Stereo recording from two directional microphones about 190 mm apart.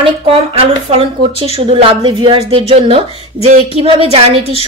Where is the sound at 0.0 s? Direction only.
30° right (ahead or behind).